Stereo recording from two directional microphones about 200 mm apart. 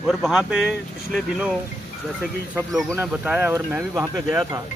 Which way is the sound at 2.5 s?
10° right (ahead or behind).